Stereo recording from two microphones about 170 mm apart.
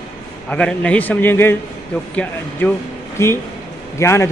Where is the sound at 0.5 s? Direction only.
5° left (ahead or behind).